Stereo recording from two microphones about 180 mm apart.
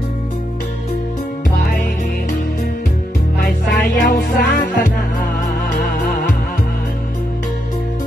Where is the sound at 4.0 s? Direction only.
55° left (ahead or behind).